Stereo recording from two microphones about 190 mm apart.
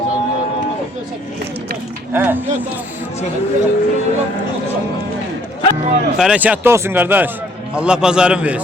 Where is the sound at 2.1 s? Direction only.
10° right (ahead or behind).